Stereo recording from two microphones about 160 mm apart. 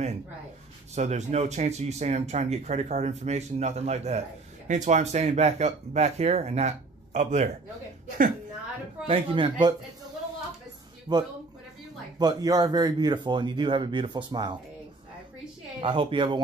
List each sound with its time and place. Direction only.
0.9 s speech: 45° right (ahead or behind)
9.0 s speech: 35° right (ahead or behind)
11.1 s speech: 20° right (ahead or behind)
15.8 s speech: 30° right (ahead or behind)